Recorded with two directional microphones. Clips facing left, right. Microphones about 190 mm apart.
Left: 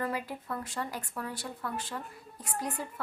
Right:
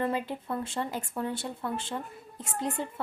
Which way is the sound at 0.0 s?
25° right (ahead or behind).